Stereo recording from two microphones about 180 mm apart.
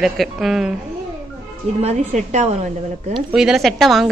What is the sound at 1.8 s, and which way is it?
Speech, 40° right (ahead or behind).